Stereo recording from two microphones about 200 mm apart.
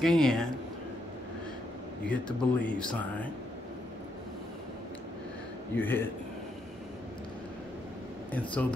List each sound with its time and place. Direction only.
0.0 s speech: centre (ahead or behind)
2.0 s speech: 5° left (ahead or behind)
5.8 s speech: 10° left (ahead or behind)
8.3 s speech: 5° left (ahead or behind)